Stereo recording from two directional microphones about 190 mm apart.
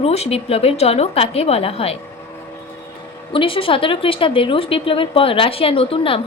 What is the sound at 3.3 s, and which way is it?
A woman's voice, 30° left (ahead or behind).